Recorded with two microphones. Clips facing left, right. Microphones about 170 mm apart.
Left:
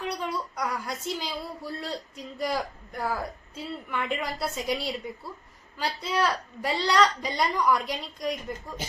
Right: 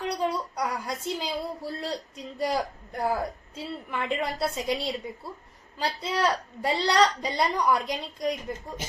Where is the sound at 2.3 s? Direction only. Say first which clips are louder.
Right 2 dB; 30° right (ahead or behind).